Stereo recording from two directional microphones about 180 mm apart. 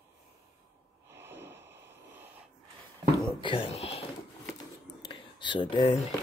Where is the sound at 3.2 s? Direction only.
30° left (ahead or behind).